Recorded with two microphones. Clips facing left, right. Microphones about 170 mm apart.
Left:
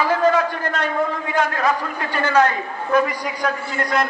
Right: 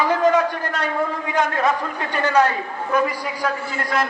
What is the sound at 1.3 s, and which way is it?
Speech, 20° right (ahead or behind).